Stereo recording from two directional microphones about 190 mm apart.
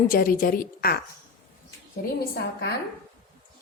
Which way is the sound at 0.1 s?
50° left (ahead or behind).